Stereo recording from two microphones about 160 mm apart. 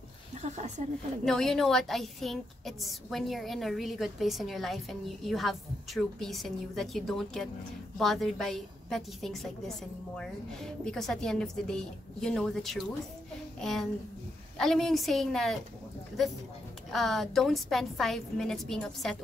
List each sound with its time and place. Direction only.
0.4 s a woman's voice: 45° right (ahead or behind)
1.2 s a woman's voice: centre (ahead or behind)
16.9 s a woman's voice: centre (ahead or behind)